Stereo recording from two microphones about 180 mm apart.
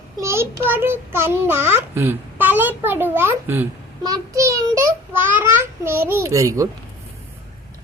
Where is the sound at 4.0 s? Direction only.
20° right (ahead or behind).